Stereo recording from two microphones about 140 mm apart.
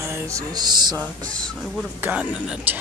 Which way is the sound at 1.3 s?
5° left (ahead or behind).